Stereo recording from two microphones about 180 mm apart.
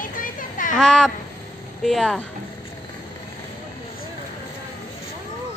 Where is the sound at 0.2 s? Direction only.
50° left (ahead or behind).